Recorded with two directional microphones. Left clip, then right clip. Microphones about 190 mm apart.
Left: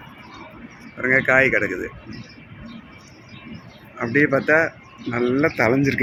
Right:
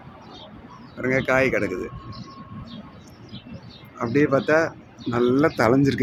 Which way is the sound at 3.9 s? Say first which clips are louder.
Left 2 dB; centre (ahead or behind).